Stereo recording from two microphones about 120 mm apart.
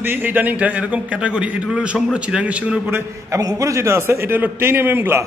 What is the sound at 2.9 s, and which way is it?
A man's voice, 25° right (ahead or behind).